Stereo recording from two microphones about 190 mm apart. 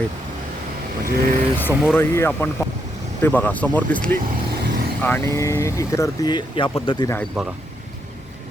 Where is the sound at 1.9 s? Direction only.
10° left (ahead or behind).